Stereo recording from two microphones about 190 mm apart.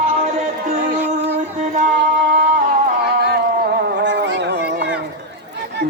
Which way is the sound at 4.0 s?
65° right (ahead or behind).